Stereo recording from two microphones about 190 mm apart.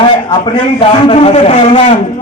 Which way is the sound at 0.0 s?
25° left (ahead or behind).